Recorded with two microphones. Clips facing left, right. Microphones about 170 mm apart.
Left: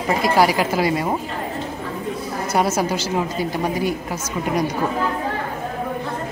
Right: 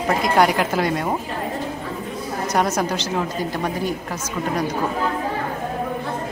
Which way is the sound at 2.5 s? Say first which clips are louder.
Left 1 dB; 5° left (ahead or behind).